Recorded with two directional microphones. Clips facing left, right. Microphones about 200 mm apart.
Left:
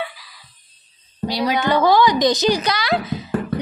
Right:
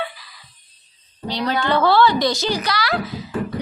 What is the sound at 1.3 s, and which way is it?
A woman's voice, 10° left (ahead or behind).